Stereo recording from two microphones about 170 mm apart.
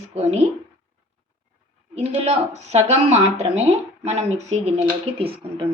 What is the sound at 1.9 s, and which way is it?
Speech, 40° right (ahead or behind).